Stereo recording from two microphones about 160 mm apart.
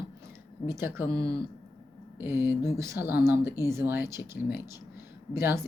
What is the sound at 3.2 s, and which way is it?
Speech, 15° right (ahead or behind).